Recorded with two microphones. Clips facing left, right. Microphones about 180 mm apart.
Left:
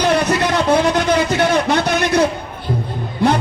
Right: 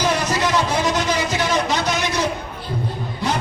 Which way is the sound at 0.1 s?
60° left (ahead or behind).